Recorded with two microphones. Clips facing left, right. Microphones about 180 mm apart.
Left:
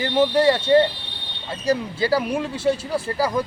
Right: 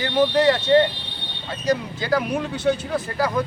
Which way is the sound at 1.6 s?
30° left (ahead or behind).